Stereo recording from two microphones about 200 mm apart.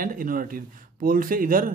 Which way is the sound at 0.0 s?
45° right (ahead or behind).